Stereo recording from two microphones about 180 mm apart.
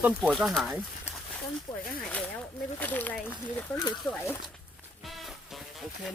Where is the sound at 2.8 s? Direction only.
10° left (ahead or behind).